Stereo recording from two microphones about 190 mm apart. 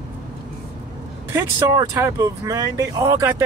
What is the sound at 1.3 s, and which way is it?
Speech, 15° right (ahead or behind).